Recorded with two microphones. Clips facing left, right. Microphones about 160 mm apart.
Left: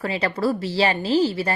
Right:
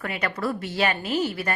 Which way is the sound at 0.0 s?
30° left (ahead or behind).